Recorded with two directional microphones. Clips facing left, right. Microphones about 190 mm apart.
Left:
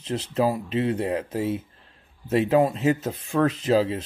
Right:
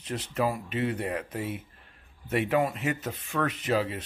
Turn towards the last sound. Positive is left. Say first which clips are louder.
# left 6 dB
turn(degrees=30)  # may be behind; listen again after turning